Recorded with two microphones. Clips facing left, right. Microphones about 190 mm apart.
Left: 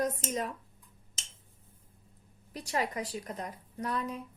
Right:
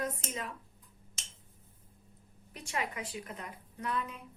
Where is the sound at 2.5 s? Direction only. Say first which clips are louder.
Left 5 dB; 35° left (ahead or behind).